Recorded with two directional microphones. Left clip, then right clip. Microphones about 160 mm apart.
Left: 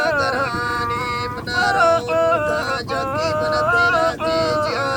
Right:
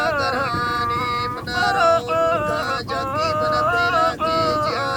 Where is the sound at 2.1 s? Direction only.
40° left (ahead or behind).